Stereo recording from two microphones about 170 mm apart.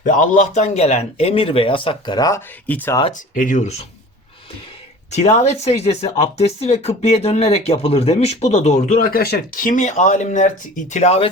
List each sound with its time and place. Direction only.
0.0 s speech: 50° left (ahead or behind); by 2.4 s 20° left (ahead or behind)
2.6 s speech: 10° left (ahead or behind)
3.1 s speech: 50° left (ahead or behind)
5.1 s speech: 40° left (ahead or behind)